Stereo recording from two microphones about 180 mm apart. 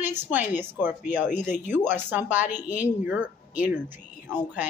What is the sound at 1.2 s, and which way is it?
Speech, 45° left (ahead or behind).